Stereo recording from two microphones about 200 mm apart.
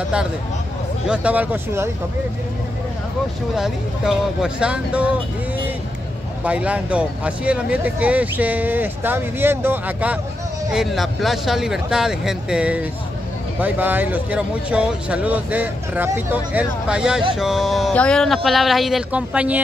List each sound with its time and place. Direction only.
1.0 s speech: 5° right (ahead or behind)
3.5 s speech: centre (ahead or behind)
6.4 s speech: 5° right (ahead or behind)